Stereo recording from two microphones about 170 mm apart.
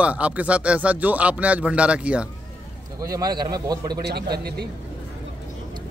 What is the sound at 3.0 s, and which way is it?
Speech, 20° right (ahead or behind).